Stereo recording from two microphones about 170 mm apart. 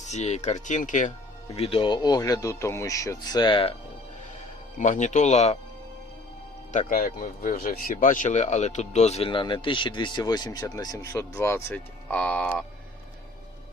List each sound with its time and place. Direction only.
0.0 s speech: 40° left (ahead or behind)
1.5 s speech: 35° left (ahead or behind)
4.8 s speech: 45° left (ahead or behind)
6.7 s speech: 50° left (ahead or behind); by 12.6 s 5° left (ahead or behind)